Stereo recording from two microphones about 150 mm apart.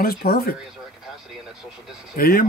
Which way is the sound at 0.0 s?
90° left.